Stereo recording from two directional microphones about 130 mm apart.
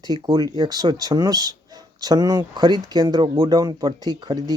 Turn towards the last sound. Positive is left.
turn(degrees=-30)  # may be behind; listen again after turning